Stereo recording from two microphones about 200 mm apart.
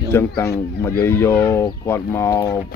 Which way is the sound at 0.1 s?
15° left (ahead or behind).